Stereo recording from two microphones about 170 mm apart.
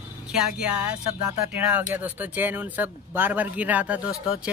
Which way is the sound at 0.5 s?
5° right (ahead or behind).